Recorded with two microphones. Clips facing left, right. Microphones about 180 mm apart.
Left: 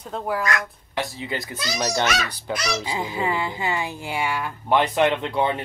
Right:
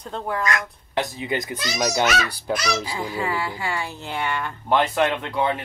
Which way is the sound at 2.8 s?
20° left (ahead or behind).